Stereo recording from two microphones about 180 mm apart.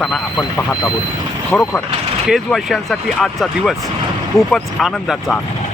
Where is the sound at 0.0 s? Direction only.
Centre (ahead or behind).